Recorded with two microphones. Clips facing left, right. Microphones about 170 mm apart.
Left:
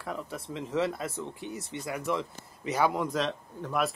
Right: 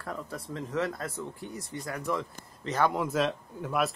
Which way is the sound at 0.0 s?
5° left (ahead or behind).